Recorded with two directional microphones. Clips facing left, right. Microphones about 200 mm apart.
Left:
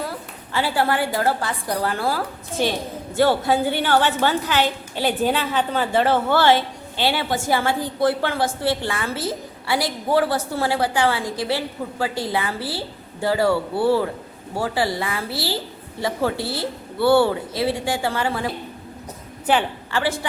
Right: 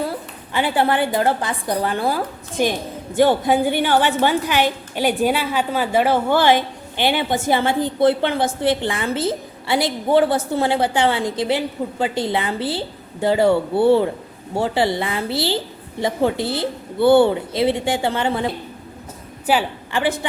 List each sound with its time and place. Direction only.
0.0 s a woman's voice: 20° right (ahead or behind)